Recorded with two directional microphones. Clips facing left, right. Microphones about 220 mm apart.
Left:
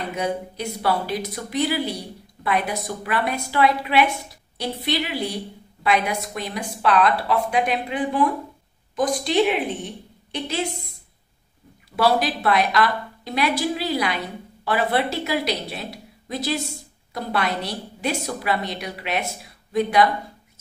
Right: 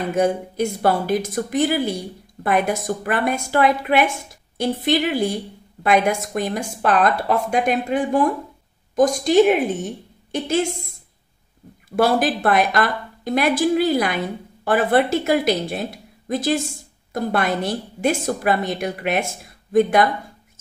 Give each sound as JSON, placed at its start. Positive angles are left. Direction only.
{"t": 0.1, "sound": "a woman's voice", "side_deg": -45}
{"t": 11.9, "sound": "a woman's voice", "side_deg": -50}